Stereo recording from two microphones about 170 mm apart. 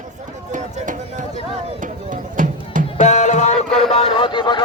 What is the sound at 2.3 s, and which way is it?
Music, 50° right (ahead or behind).